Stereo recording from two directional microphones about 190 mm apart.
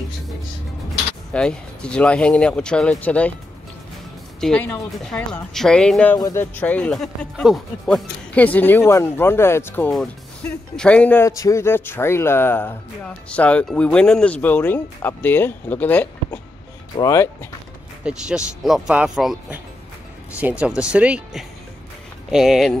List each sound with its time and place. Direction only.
1.3 s speech: 5° left (ahead or behind)
4.4 s speech: 5° left (ahead or behind)
18.0 s speech: 5° right (ahead or behind)